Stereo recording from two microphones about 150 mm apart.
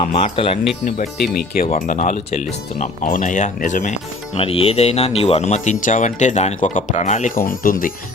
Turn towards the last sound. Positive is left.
turn(degrees=70)  # may be behind; listen again after turning